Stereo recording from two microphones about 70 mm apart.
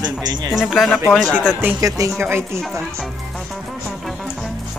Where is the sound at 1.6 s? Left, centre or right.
Right.